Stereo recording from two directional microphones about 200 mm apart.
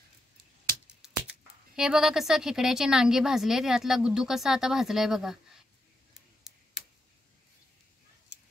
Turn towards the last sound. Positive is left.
turn(degrees=0)  # may be behind; listen again after turning